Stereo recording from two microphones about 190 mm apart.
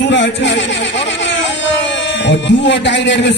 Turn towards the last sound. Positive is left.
turn(degrees=70)  # may be behind; listen again after turning